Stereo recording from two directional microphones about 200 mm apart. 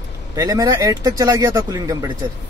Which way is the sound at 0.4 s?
15° right (ahead or behind).